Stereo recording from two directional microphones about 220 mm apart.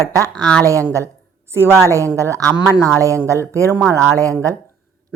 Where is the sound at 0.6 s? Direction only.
15° right (ahead or behind).